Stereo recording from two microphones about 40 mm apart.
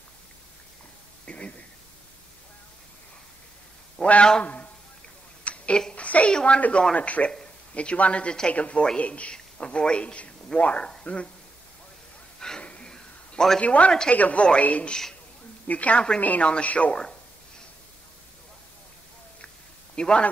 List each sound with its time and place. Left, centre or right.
1.2 s a sound: left
4.0 s a man's voice: left
4.4 s a sound: left
6.2 s a man's voice: left
7.0 s a woman's voice: left
12.4 s a sound: centre
12.6 s gasp: left
13.6 s a woman's voice: left
16.4 s a woman's voice: left
20.0 s a man's voice: left